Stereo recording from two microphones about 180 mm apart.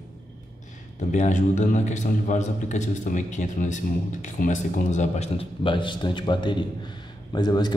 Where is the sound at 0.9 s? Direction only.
40° left (ahead or behind).